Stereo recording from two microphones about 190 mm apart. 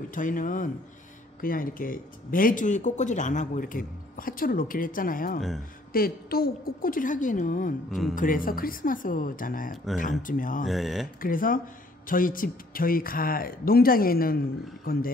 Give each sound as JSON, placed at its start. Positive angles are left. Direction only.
{"t": 0.1, "sound": "speech", "side_deg": 45}
{"t": 10.7, "sound": "speech", "side_deg": 0}
{"t": 11.1, "sound": "speech", "side_deg": 45}